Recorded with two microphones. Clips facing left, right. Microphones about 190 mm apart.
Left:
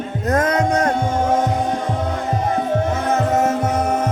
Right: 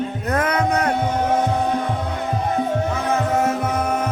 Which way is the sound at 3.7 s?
20° left (ahead or behind).